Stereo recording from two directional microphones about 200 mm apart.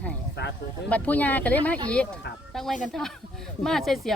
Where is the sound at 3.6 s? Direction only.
Centre (ahead or behind).